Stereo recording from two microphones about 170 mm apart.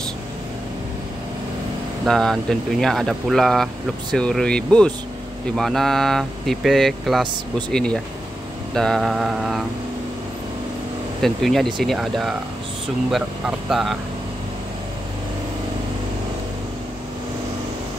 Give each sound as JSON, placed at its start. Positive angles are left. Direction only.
{"t": 2.0, "sound": "speech", "side_deg": 0}
{"t": 11.1, "sound": "speech", "side_deg": 0}